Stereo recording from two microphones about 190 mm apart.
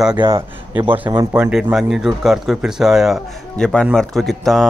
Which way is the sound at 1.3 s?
5° right (ahead or behind).